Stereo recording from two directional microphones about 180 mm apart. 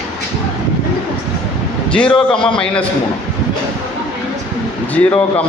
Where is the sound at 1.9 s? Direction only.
5° left (ahead or behind).